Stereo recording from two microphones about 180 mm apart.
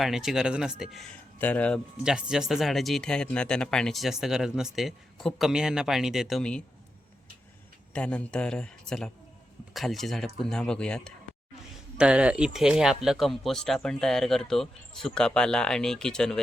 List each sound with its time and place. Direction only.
0.0 s speech: centre (ahead or behind)
7.9 s speech: 5° left (ahead or behind)
11.9 s speech: 5° right (ahead or behind)